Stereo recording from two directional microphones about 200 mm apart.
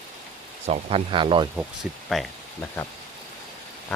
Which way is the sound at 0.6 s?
30° right (ahead or behind).